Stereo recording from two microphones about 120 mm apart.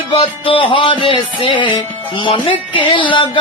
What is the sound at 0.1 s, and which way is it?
Music, 50° left (ahead or behind).